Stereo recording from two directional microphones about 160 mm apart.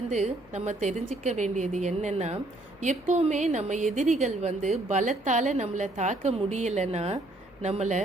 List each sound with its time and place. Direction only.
0.1 s a woman's voice: 45° right (ahead or behind)